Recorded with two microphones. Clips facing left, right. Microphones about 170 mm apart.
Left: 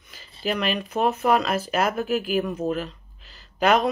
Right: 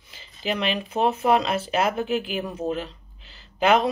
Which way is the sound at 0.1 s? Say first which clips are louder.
Left 1 dB; 45° left (ahead or behind).